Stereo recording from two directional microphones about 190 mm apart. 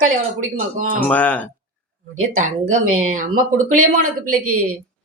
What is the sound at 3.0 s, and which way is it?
Speech, 45° right (ahead or behind).